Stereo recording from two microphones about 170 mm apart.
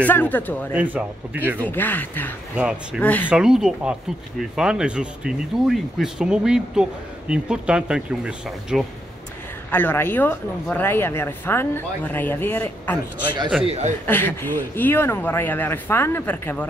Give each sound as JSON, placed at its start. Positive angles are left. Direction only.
{"t": 0.0, "sound": "speech", "side_deg": 10}
{"t": 0.7, "sound": "speech", "side_deg": -10}
{"t": 1.6, "sound": "speech", "side_deg": 10}
{"t": 2.5, "sound": "speech", "side_deg": -5}
{"t": 3.0, "sound": "speech", "side_deg": 10}
{"t": 3.3, "sound": "speech", "side_deg": -5}
{"t": 9.7, "sound": "speech", "side_deg": 10}
{"t": 13.7, "sound": "speech", "side_deg": -40}
{"t": 14.0, "sound": "speech", "side_deg": 10}